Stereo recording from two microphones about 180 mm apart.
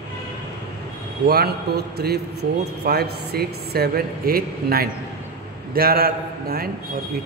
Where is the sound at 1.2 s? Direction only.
60° right (ahead or behind).